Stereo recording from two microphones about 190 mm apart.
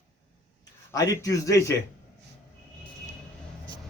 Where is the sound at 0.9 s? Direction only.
20° left (ahead or behind).